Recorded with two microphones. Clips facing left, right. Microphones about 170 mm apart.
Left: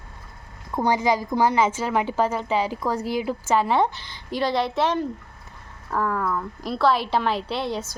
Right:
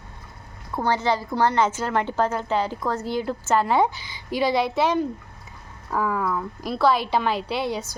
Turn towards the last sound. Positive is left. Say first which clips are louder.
# right 1 dB
turn(degrees=0)  # may be behind; listen again after turning